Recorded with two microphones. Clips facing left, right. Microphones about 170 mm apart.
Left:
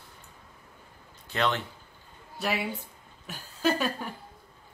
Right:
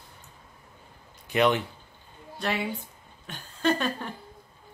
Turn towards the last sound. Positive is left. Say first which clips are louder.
# right 1 dB
turn(degrees=5)  # may be behind; listen again after turning